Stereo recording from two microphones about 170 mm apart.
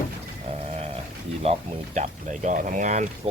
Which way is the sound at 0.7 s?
40° right (ahead or behind).